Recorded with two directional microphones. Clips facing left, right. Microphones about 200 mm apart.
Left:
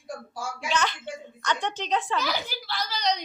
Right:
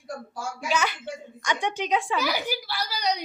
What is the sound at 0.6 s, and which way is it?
A woman's voice, 10° right (ahead or behind).